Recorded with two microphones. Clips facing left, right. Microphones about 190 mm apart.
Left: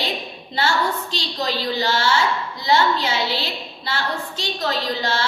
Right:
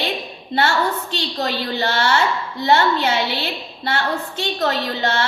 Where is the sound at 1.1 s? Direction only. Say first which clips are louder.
Right 2 dB; 60° right (ahead or behind).